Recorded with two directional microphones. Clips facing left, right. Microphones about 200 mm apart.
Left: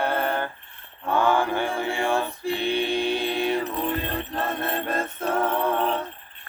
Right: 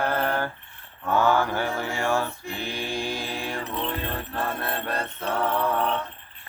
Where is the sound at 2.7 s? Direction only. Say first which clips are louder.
Left 5 dB; 65° left (ahead or behind).